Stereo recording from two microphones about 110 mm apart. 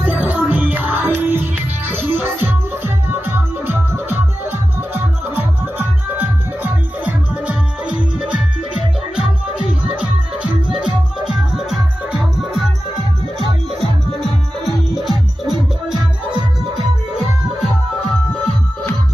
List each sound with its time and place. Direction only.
0.0 s music: 15° right (ahead or behind)
14.6 s music: centre (ahead or behind)
15.9 s music: 40° right (ahead or behind)